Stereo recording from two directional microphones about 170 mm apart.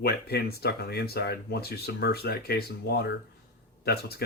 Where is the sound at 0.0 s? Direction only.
65° left (ahead or behind).